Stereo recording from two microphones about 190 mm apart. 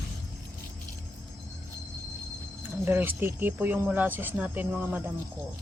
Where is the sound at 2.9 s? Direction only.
10° right (ahead or behind).